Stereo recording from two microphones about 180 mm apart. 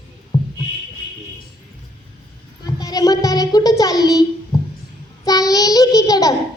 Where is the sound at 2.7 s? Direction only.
20° left (ahead or behind).